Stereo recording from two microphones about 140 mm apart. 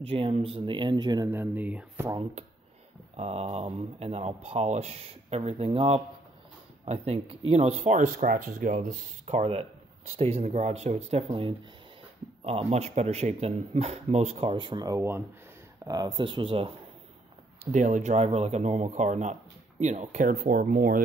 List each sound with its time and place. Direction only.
0.0 s speech: 40° right (ahead or behind)
1.3 s speech: 15° right (ahead or behind)
3.2 s speech: 45° right (ahead or behind); by 15.0 s 30° right (ahead or behind)
15.0 s speech: 15° right (ahead or behind)
15.8 s speech: 30° right (ahead or behind)
17.6 s speech: 60° right (ahead or behind); by 21.0 s 85° right